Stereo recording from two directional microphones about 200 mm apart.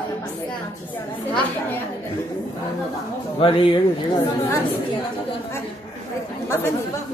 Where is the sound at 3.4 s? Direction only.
25° left (ahead or behind).